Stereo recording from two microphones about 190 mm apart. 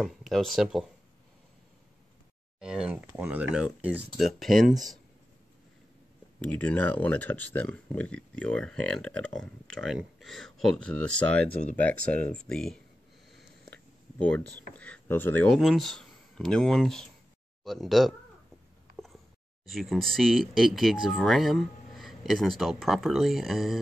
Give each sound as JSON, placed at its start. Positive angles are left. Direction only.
{"t": 0.0, "sound": "speech", "side_deg": 0}
{"t": 2.6, "sound": "speech", "side_deg": -5}
{"t": 4.7, "sound": "speech", "side_deg": -20}
{"t": 6.4, "sound": "speech", "side_deg": 5}
{"t": 14.2, "sound": "speech", "side_deg": 5}
{"t": 19.7, "sound": "speech", "side_deg": 0}